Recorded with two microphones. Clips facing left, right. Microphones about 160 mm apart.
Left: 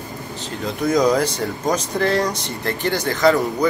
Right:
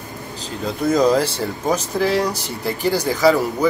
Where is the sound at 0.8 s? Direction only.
5° right (ahead or behind).